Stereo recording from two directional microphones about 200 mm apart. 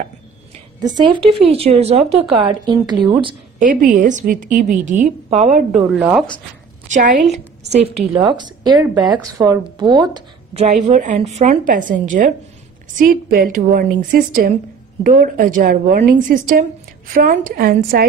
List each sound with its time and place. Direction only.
0.7 s a woman's voice: 20° right (ahead or behind)
3.5 s a woman's voice: 40° right (ahead or behind)
5.7 s a woman's voice: centre (ahead or behind)
6.9 s a woman's voice: 40° right (ahead or behind)
8.1 s a woman's voice: 25° right (ahead or behind); by 18.0 s 45° right (ahead or behind)